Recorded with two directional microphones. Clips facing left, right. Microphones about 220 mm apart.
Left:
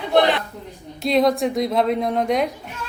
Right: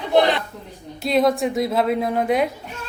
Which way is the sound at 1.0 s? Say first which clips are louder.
Left 1 dB; centre (ahead or behind).